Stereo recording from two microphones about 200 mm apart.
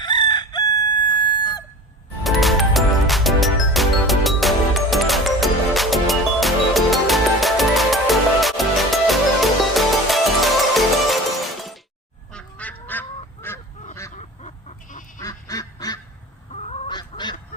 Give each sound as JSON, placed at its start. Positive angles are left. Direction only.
{"t": 0.0, "sound": "chicken", "side_deg": 20}
{"t": 2.2, "sound": "music", "side_deg": 0}
{"t": 12.3, "sound": "goose", "side_deg": 5}
{"t": 14.2, "sound": "goat", "side_deg": 35}
{"t": 15.2, "sound": "duck", "side_deg": 15}
{"t": 16.5, "sound": "goose", "side_deg": 30}